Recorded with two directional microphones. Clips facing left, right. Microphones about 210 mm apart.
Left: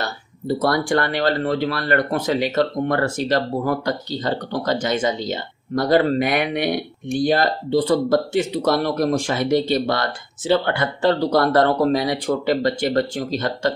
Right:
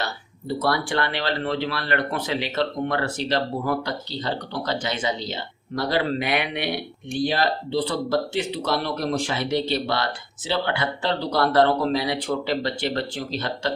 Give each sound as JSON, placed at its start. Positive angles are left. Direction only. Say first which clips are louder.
{"t": 0.6, "sound": "speech", "louder": "left 4 dB", "side_deg": 45}